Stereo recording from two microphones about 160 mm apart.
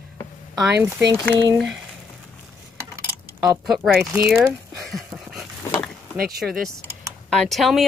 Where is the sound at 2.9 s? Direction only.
15° right (ahead or behind).